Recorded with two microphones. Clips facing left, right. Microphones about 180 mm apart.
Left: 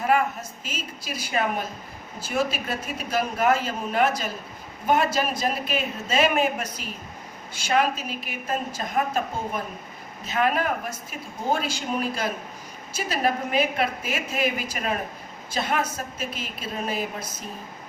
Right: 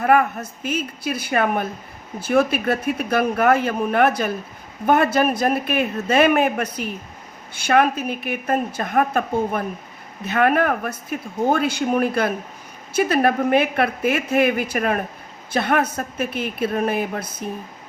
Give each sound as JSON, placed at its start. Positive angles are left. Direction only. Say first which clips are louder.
{"t": 0.0, "sound": "a woman's voice", "louder": "right 5 dB", "side_deg": -60}